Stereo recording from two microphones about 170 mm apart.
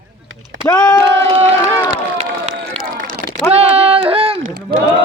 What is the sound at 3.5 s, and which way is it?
Speech, 35° right (ahead or behind).